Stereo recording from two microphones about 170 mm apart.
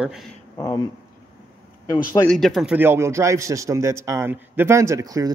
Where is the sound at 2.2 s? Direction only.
5° left (ahead or behind).